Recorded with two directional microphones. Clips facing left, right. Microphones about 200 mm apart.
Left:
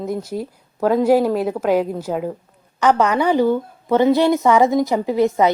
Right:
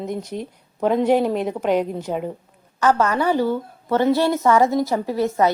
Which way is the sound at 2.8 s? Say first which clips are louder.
Left 2 dB; 15° left (ahead or behind).